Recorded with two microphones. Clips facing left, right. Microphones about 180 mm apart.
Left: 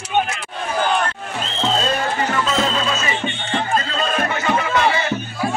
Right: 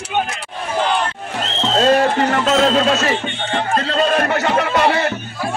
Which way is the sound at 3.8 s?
65° right (ahead or behind).